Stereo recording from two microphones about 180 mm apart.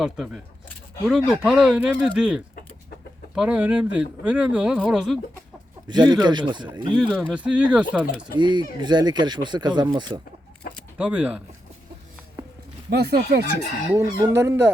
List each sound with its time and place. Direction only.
0.0 s speech: 5° right (ahead or behind)
5.9 s speech: 25° right (ahead or behind)
6.9 s speech: 5° right (ahead or behind)
8.4 s speech: 25° right (ahead or behind)
10.9 s speech: 10° right (ahead or behind)
12.9 s speech: 65° right (ahead or behind)
13.9 s speech: 15° right (ahead or behind)